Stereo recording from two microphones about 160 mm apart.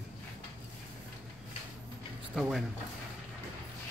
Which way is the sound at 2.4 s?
Centre (ahead or behind).